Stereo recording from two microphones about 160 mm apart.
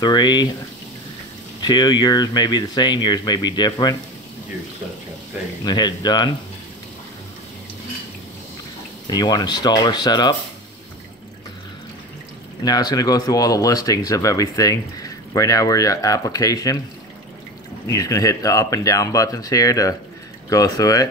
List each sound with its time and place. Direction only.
0.0 s speech: 25° left (ahead or behind)
1.6 s speech: 25° left (ahead or behind)
5.6 s speech: 25° left (ahead or behind)
9.0 s speech: 25° left (ahead or behind)
12.6 s speech: 25° left (ahead or behind)
17.8 s speech: 20° left (ahead or behind)